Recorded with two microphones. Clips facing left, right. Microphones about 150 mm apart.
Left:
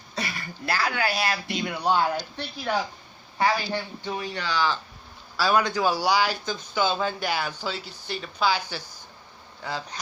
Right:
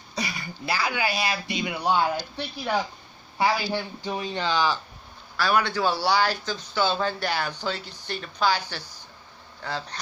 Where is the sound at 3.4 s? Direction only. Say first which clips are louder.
Even; 10° right (ahead or behind).